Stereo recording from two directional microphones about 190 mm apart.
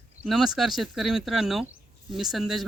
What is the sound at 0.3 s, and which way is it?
Speech, centre (ahead or behind).